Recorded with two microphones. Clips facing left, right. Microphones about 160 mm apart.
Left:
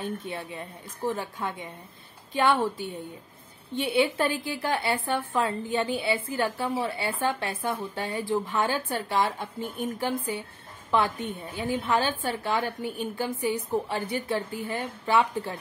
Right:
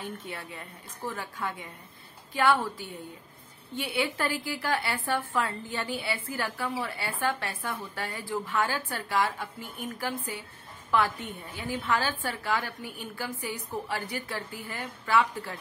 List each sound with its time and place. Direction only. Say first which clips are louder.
0.3 s a woman's voice: left 5 dB; 20° left (ahead or behind)